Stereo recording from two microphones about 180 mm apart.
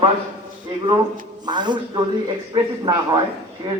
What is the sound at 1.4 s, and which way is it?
A man's voice, 25° right (ahead or behind).